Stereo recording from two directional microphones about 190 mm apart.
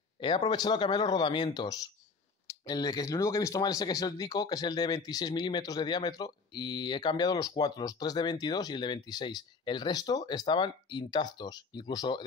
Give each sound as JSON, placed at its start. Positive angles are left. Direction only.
{"t": 0.2, "sound": "speech", "side_deg": 25}